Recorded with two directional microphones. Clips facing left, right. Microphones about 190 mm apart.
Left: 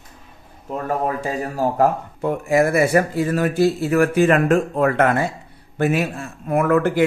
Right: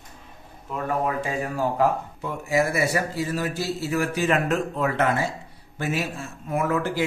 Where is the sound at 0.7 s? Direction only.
40° left (ahead or behind).